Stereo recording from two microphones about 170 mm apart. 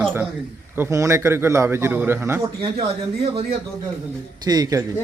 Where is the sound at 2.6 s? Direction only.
35° right (ahead or behind).